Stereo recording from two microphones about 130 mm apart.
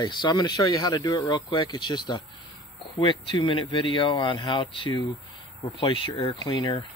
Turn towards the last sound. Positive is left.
turn(degrees=35)  # may be behind; listen again after turning